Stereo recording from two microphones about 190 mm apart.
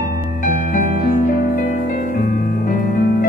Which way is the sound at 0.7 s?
45° left (ahead or behind).